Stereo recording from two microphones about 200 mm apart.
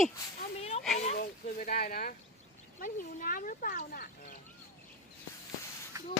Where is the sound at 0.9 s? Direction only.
35° left (ahead or behind).